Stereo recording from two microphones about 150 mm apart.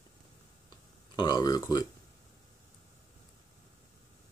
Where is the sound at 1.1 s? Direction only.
30° left (ahead or behind).